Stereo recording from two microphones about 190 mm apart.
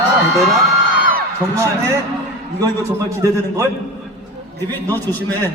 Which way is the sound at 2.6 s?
15° right (ahead or behind).